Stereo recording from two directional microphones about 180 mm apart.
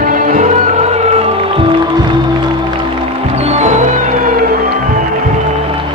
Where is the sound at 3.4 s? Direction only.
35° right (ahead or behind).